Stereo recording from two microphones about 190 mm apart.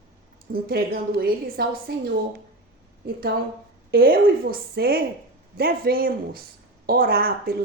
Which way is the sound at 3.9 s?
50° right (ahead or behind).